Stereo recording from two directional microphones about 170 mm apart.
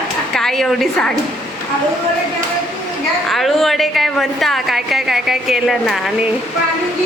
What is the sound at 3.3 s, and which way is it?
A woman's voice, centre (ahead or behind).